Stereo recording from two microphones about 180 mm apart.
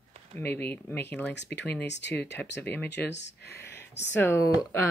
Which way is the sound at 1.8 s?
75° left (ahead or behind).